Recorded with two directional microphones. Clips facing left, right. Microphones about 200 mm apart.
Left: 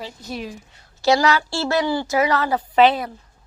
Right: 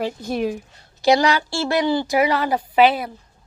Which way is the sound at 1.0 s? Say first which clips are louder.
Right 1 dB; 15° right (ahead or behind).